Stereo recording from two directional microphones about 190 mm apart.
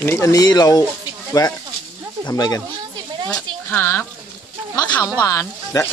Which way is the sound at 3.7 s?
10° left (ahead or behind).